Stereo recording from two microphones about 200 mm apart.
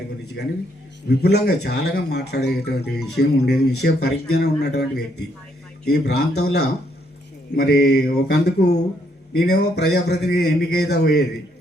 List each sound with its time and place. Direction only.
0.4 s speech: 55° left (ahead or behind)